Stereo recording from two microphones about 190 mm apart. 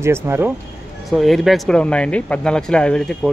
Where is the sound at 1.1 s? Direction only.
Centre (ahead or behind).